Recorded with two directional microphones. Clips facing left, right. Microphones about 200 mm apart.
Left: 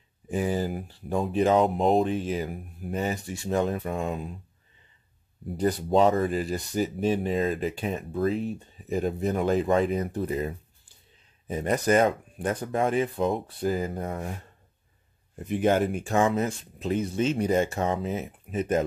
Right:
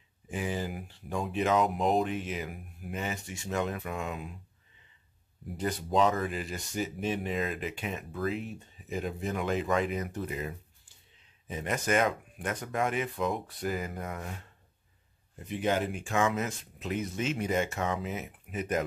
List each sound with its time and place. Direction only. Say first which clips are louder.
0.3 s speech: left 7 dB; 40° left (ahead or behind)
5.5 s speech: left 7 dB; 35° left (ahead or behind)
15.4 s speech: left 6 dB; 50° left (ahead or behind); by 18.9 s 30° left (ahead or behind)